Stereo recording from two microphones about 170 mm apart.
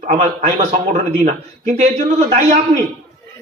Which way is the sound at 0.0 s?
40° right (ahead or behind).